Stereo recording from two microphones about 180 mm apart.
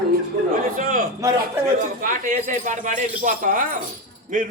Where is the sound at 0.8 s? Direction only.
50° right (ahead or behind).